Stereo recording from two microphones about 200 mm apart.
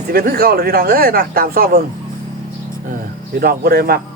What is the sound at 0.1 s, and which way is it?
Speech, 50° right (ahead or behind).